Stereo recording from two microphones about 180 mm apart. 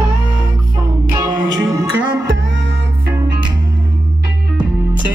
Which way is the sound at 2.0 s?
90° right.